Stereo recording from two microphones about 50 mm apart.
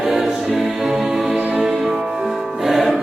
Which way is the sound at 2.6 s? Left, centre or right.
Centre.